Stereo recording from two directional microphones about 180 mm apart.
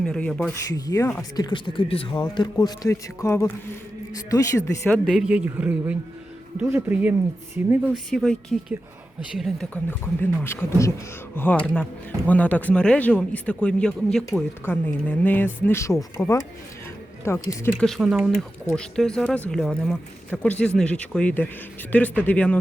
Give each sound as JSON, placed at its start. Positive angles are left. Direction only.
{"t": 0.0, "sound": "speech", "side_deg": 5}
{"t": 0.7, "sound": "a man's voice", "side_deg": 20}
{"t": 1.5, "sound": "a man's voice", "side_deg": 25}
{"t": 5.0, "sound": "speech", "side_deg": -5}
{"t": 8.1, "sound": "speech", "side_deg": 5}
{"t": 17.7, "sound": "speech", "side_deg": 0}